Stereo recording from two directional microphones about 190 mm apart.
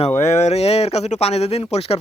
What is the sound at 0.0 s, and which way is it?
Speech, 35° left (ahead or behind).